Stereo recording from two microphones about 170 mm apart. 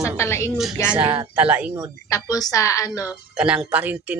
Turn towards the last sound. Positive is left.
turn(degrees=-10)  # may be behind; listen again after turning